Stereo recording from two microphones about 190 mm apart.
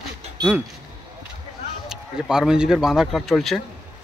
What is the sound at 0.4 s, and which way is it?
Speech, 20° right (ahead or behind).